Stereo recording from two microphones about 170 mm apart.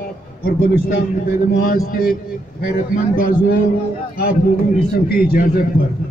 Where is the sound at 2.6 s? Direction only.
55° left (ahead or behind).